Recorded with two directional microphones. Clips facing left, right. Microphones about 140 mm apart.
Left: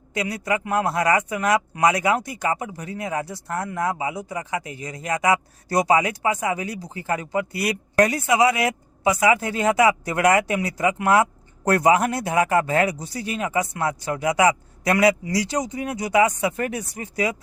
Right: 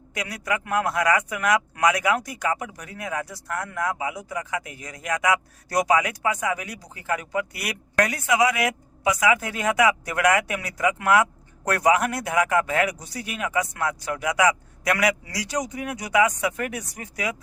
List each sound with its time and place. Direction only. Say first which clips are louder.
0.1 s a man's voice: left 4 dB; 25° left (ahead or behind)